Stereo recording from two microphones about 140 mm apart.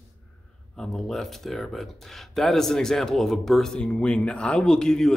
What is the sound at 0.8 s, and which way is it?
Speech, centre (ahead or behind).